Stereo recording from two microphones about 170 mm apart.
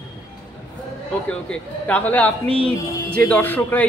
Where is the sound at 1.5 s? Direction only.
10° left (ahead or behind).